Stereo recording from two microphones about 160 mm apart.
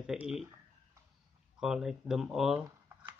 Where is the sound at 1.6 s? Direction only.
5° right (ahead or behind).